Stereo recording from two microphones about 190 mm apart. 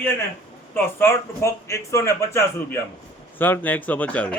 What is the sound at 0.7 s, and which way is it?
A man's voice, 10° left (ahead or behind).